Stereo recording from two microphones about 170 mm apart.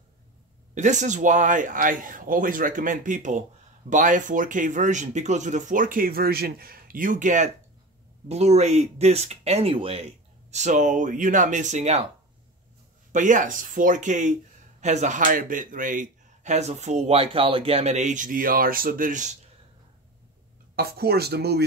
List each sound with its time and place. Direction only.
0.7 s a man's voice: 45° right (ahead or behind)
13.1 s a man's voice: 50° right (ahead or behind)
20.7 s speech: 65° right (ahead or behind)